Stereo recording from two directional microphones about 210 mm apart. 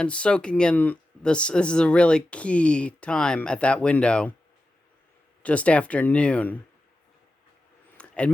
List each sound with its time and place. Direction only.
0.0 s speech: 5° left (ahead or behind)
5.4 s speech: 5° left (ahead or behind)
7.9 s a sound: 5° left (ahead or behind)